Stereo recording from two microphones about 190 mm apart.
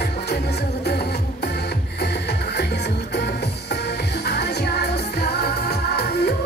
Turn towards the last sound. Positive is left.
turn(degrees=55)  # may be behind; listen again after turning